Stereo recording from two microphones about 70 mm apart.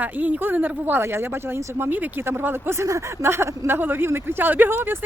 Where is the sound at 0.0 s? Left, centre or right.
Right.